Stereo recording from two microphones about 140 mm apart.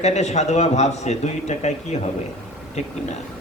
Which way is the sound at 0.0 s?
55° left (ahead or behind).